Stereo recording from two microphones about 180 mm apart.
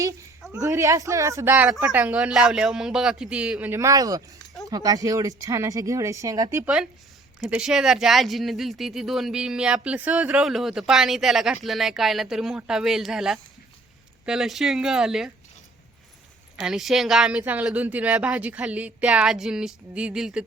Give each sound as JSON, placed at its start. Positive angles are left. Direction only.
{"t": 0.6, "sound": "speech", "side_deg": -15}
{"t": 7.3, "sound": "speech", "side_deg": -5}
{"t": 16.6, "sound": "speech", "side_deg": 0}